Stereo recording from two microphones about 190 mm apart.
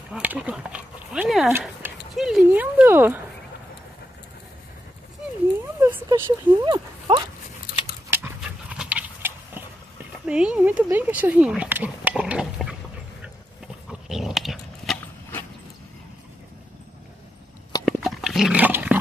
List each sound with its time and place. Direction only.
0.1 s speech: 5° right (ahead or behind)
5.8 s speech: 10° right (ahead or behind)
6.6 s a sound: 20° right (ahead or behind)
8.1 s dog: 10° right (ahead or behind)
10.2 s speech: 5° right (ahead or behind)
13.8 s dog: centre (ahead or behind)
17.8 s pig: centre (ahead or behind)